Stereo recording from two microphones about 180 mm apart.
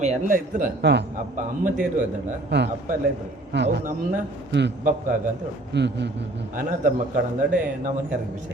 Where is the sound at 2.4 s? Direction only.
70° right (ahead or behind).